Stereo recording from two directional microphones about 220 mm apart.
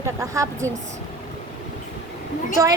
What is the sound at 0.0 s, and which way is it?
Speech, 15° right (ahead or behind).